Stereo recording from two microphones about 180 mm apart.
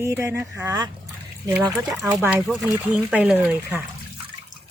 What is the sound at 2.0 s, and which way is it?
A woman's voice, 10° right (ahead or behind).